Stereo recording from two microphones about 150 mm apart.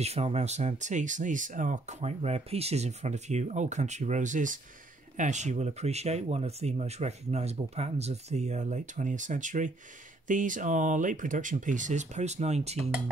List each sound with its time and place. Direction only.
0.0 s speech: 45° right (ahead or behind)